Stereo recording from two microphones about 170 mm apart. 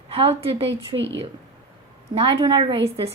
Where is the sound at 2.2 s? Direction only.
30° right (ahead or behind).